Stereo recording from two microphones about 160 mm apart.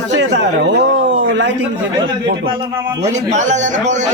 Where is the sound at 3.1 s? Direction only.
45° right (ahead or behind).